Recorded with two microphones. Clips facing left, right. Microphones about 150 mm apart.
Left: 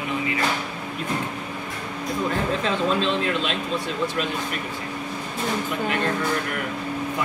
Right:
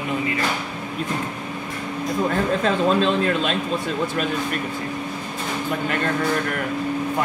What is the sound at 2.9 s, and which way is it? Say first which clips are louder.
Speech: right 4 dB; 45° right (ahead or behind).